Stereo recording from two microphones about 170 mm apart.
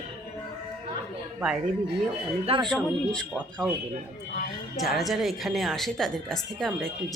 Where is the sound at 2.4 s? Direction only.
35° right (ahead or behind).